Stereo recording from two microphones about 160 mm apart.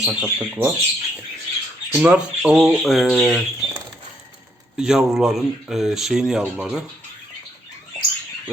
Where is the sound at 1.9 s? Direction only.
5° right (ahead or behind).